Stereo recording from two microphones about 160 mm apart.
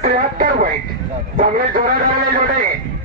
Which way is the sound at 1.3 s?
60° right (ahead or behind).